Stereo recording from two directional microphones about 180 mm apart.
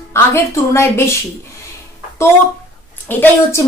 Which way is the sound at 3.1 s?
15° left (ahead or behind).